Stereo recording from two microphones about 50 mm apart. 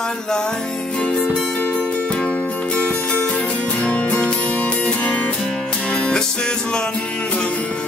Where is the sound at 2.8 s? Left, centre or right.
Left.